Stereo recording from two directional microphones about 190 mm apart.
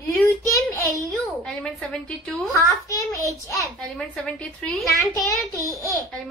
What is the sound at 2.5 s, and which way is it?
A child's voice, 15° left (ahead or behind).